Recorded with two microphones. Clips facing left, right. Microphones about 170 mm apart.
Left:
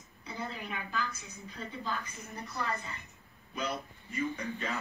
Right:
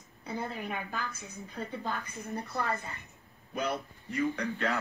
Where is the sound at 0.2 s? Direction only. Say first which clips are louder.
Right 4 dB; 55° right (ahead or behind).